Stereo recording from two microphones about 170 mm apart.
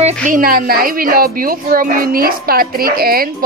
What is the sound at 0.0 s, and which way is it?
Speech, 50° right (ahead or behind).